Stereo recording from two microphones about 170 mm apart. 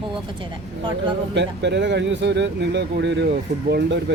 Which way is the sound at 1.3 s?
90° right.